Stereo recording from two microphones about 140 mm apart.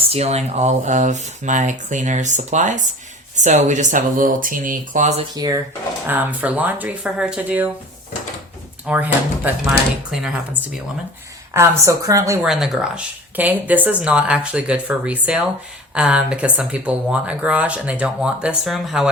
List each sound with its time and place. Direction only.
0.1 s speech: 50° right (ahead or behind); by 5.1 s 70° right (ahead or behind)
5.3 s speech: 30° right (ahead or behind)
6.1 s speech: 10° right (ahead or behind)
8.9 s speech: 10° right (ahead or behind)
11.5 s speech: 20° right (ahead or behind)
12.4 s speech: 5° right (ahead or behind)